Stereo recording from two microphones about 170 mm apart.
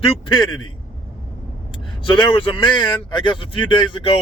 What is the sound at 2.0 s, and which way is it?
Speech, 30° left (ahead or behind).